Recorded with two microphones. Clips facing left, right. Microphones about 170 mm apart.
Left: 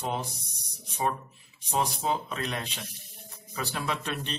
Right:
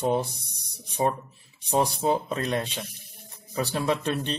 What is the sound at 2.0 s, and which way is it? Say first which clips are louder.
Speech: right 5 dB; 35° right (ahead or behind).